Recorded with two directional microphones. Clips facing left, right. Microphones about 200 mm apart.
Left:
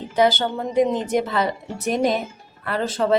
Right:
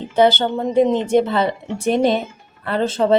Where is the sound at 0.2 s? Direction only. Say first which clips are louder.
Right 4 dB; 25° right (ahead or behind).